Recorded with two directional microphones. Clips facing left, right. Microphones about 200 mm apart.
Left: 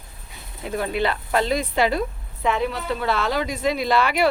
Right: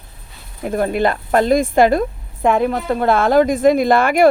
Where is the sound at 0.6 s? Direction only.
50° right (ahead or behind).